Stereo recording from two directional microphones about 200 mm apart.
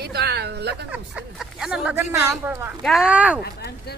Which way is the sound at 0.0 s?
55° right (ahead or behind).